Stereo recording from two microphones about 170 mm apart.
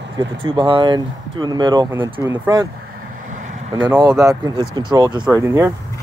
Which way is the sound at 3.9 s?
20° right (ahead or behind).